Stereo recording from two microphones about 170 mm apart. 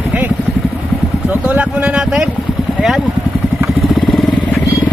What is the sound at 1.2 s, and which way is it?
Speech, 10° right (ahead or behind).